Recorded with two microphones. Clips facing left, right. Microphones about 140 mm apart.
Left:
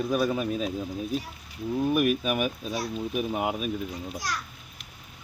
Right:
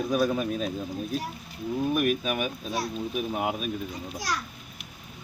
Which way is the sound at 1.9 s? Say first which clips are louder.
Left 2 dB; 5° left (ahead or behind).